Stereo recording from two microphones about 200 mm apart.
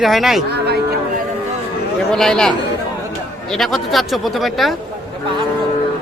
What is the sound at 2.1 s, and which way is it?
A man's voice, 5° left (ahead or behind).